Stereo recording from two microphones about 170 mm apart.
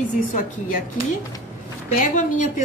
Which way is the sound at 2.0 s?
50° left (ahead or behind).